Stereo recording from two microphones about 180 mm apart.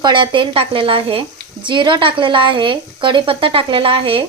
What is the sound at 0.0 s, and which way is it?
A woman's voice, 25° right (ahead or behind).